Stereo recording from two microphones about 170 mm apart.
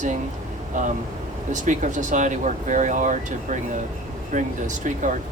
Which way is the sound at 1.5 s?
45° right (ahead or behind).